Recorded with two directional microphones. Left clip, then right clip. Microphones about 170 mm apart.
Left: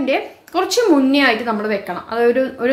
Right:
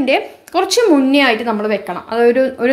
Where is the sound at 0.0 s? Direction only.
30° right (ahead or behind).